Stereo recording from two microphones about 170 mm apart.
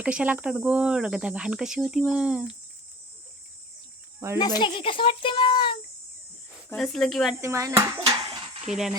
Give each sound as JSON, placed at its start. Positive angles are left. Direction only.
{"t": 0.0, "sound": "speech", "side_deg": -10}
{"t": 4.4, "sound": "speech", "side_deg": 25}
{"t": 6.7, "sound": "speech", "side_deg": 5}
{"t": 7.4, "sound": "a child's voice", "side_deg": -15}
{"t": 8.7, "sound": "speech", "side_deg": 0}